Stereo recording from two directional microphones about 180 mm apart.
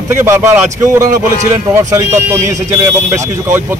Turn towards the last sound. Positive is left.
turn(degrees=-15)  # may be behind; listen again after turning